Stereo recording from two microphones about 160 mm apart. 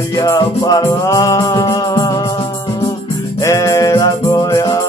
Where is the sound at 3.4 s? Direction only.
20° left (ahead or behind).